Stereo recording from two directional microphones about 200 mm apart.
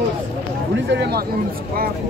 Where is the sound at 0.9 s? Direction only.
55° right (ahead or behind).